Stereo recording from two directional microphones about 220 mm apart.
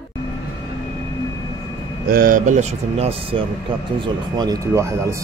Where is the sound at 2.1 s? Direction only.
40° right (ahead or behind).